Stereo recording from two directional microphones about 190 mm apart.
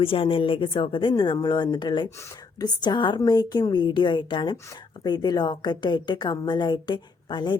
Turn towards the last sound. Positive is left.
turn(degrees=20)  # may be behind; listen again after turning